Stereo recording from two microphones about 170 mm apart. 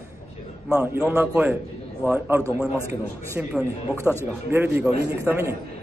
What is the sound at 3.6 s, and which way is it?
Speech, 15° left (ahead or behind).